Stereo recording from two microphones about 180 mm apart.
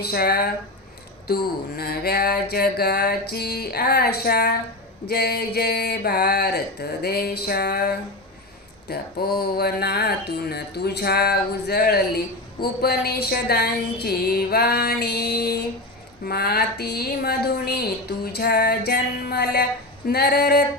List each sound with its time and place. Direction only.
0.0 s speech: 60° left (ahead or behind)
1.7 s speech: 60° left (ahead or behind)